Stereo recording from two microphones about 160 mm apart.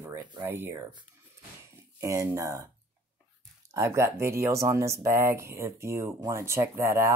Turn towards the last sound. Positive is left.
turn(degrees=-15)  # may be behind; listen again after turning